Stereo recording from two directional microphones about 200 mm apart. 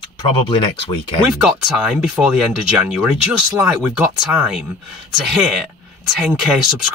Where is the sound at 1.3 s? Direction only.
5° right (ahead or behind).